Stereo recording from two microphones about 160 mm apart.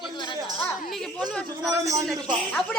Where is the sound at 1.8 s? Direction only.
20° right (ahead or behind).